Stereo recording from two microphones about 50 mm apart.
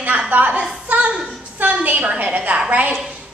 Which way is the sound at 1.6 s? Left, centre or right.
Right.